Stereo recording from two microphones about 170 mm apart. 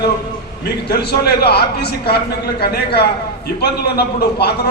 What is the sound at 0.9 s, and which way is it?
A man's voice, 70° left (ahead or behind).